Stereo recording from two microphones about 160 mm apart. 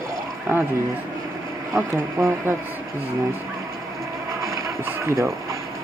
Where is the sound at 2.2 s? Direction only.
20° right (ahead or behind).